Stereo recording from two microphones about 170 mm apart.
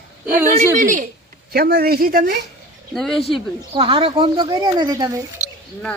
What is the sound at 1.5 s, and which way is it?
Speech, 65° right (ahead or behind).